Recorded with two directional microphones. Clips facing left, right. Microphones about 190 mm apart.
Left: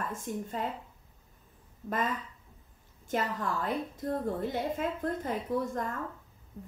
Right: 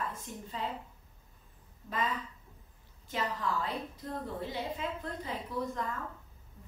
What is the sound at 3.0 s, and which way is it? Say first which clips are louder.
A woman's voice: left 3 dB; 45° left (ahead or behind).